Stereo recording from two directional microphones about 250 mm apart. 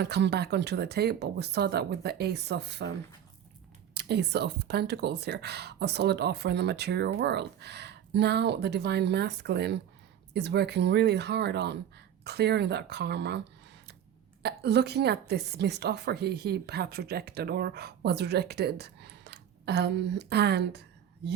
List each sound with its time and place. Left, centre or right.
0.0 s a woman's voice: right
3.9 s a woman's voice: right
14.4 s a woman's voice: right